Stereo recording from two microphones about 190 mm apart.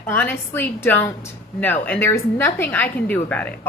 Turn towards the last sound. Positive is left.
turn(degrees=5)  # may be behind; listen again after turning